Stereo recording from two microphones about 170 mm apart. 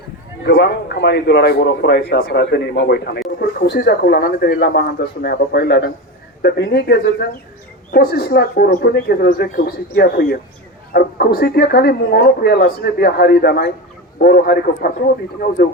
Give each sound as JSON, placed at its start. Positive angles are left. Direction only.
{"t": 0.4, "sound": "speech", "side_deg": 80}